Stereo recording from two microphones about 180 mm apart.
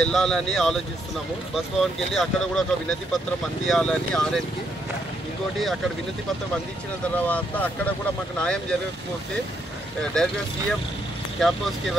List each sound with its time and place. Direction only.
0.0 s speech: 5° left (ahead or behind)
7.2 s speech: 10° left (ahead or behind)
10.1 s speech: 5° left (ahead or behind)